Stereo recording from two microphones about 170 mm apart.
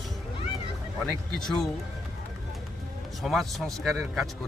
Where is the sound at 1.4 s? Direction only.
Centre (ahead or behind).